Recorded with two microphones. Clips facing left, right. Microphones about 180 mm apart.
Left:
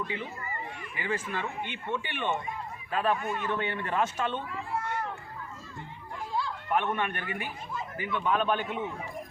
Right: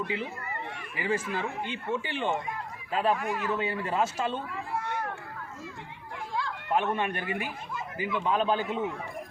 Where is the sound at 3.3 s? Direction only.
5° right (ahead or behind).